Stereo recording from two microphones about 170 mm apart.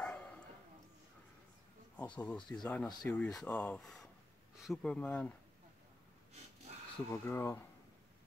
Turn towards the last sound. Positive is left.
turn(degrees=15)  # may be behind; listen again after turning